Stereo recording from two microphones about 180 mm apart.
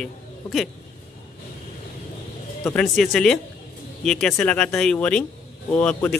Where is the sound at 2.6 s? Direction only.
10° left (ahead or behind).